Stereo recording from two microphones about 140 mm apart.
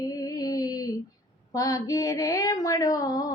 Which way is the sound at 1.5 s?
25° left (ahead or behind).